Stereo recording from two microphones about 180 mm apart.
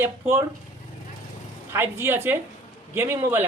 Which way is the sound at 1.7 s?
15° right (ahead or behind).